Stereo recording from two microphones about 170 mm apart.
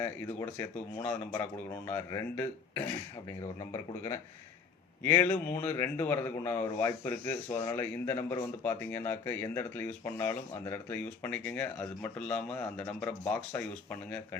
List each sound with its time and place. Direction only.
0.0 s speech: 15° left (ahead or behind)